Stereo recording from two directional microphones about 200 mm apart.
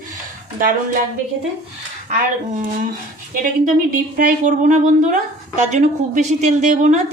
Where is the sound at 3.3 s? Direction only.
40° right (ahead or behind).